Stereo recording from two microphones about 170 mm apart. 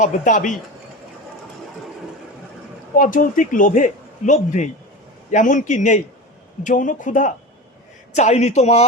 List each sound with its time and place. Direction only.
0.0 s a man's voice: 45° left (ahead or behind)
3.0 s a man's voice: 50° left (ahead or behind)